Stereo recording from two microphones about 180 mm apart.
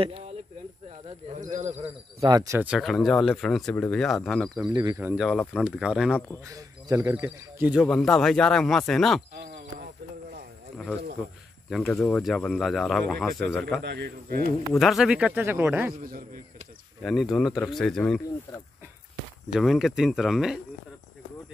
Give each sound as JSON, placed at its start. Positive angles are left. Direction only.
{"t": 1.5, "sound": "speech", "side_deg": -40}
{"t": 2.7, "sound": "speech", "side_deg": 0}
{"t": 4.7, "sound": "speech", "side_deg": -15}
{"t": 5.2, "sound": "speech", "side_deg": 0}
{"t": 6.5, "sound": "speech", "side_deg": -20}
{"t": 9.3, "sound": "a sound", "side_deg": -65}
{"t": 11.8, "sound": "speech", "side_deg": 10}
{"t": 13.8, "sound": "speech", "side_deg": -60}
{"t": 14.8, "sound": "speech", "side_deg": 0}
{"t": 16.0, "sound": "a man's voice", "side_deg": -55}
{"t": 17.0, "sound": "speech", "side_deg": 0}
{"t": 19.5, "sound": "speech", "side_deg": 0}